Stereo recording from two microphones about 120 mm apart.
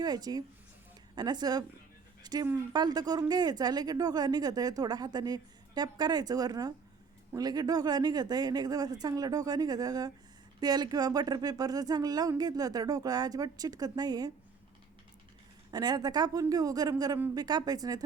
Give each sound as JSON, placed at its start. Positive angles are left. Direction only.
{"t": 0.0, "sound": "speech", "side_deg": -35}
{"t": 15.7, "sound": "speech", "side_deg": -35}